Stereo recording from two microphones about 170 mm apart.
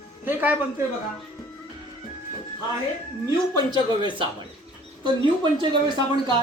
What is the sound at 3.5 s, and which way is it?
Speech, 25° right (ahead or behind).